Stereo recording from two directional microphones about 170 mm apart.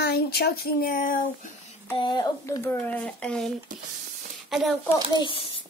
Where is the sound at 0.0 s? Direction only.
70° left (ahead or behind); by 1.5 s 50° left (ahead or behind).